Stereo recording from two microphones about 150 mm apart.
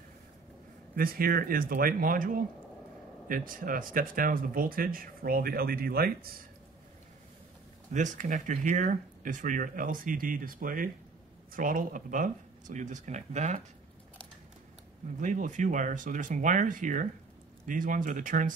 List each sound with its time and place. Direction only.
0.9 s speech: 75° right (ahead or behind)
7.9 s speech: 55° right (ahead or behind)
15.1 s speech: 55° right (ahead or behind)